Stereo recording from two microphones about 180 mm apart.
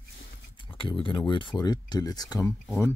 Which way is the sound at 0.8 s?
30° left (ahead or behind).